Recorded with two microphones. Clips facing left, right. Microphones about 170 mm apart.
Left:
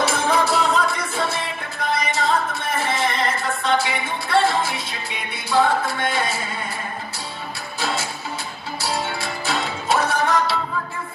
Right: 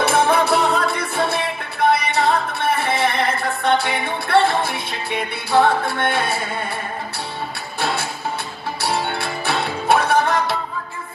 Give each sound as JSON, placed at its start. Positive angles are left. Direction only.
{"t": 0.0, "sound": "music", "side_deg": -60}
{"t": 7.8, "sound": "music", "side_deg": -60}